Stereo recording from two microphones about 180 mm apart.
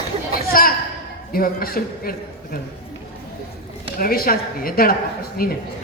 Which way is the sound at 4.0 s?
55° left (ahead or behind).